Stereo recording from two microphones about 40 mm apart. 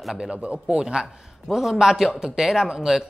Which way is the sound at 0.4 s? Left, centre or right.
Right.